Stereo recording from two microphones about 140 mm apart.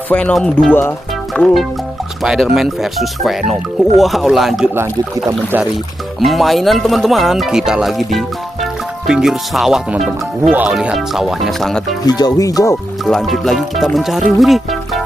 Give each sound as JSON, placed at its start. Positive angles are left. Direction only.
{"t": 0.1, "sound": "speech", "side_deg": 5}
{"t": 4.7, "sound": "speech", "side_deg": -20}
{"t": 6.1, "sound": "speech", "side_deg": 0}
{"t": 12.1, "sound": "speech", "side_deg": 30}
{"t": 13.0, "sound": "speech", "side_deg": 0}